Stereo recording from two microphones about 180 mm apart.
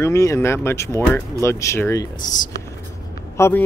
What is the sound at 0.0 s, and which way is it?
Speech, 15° left (ahead or behind).